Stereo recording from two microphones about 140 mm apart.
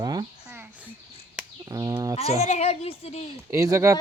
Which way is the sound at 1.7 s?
25° right (ahead or behind).